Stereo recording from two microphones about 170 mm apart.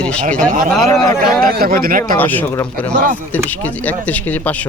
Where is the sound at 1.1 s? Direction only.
55° right (ahead or behind).